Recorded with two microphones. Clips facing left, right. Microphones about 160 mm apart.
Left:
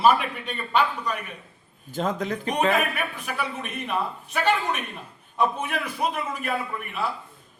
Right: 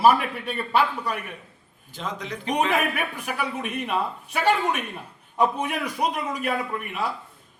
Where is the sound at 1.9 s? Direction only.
50° left (ahead or behind).